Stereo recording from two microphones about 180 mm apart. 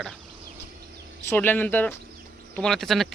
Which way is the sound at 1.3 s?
10° left (ahead or behind).